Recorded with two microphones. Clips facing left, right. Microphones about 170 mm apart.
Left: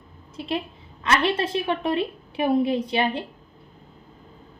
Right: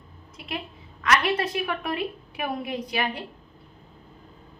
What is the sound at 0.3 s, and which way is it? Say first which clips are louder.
A woman's voice: left 7 dB; 30° left (ahead or behind).